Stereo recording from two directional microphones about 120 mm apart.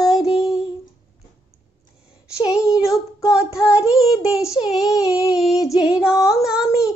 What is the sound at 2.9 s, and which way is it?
Child singing, 25° left (ahead or behind).